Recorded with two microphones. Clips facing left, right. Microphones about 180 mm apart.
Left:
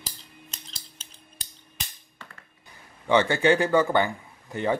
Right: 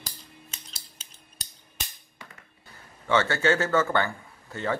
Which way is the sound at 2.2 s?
10° right (ahead or behind).